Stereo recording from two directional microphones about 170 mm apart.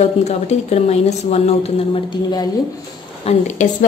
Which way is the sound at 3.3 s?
45° left (ahead or behind).